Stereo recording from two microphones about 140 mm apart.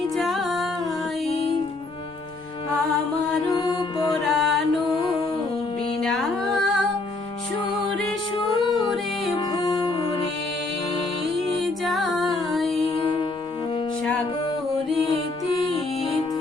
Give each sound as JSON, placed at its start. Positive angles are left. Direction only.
{"t": 0.2, "sound": "music", "side_deg": 0}
{"t": 3.5, "sound": "mantra", "side_deg": 30}
{"t": 4.2, "sound": "music", "side_deg": 0}
{"t": 6.0, "sound": "music", "side_deg": 5}
{"t": 8.4, "sound": "music", "side_deg": 35}
{"t": 11.5, "sound": "music", "side_deg": 0}